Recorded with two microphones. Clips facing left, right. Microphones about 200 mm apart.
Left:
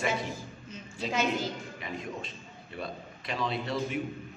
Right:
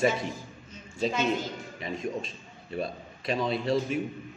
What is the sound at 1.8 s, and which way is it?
A man's voice, 25° right (ahead or behind).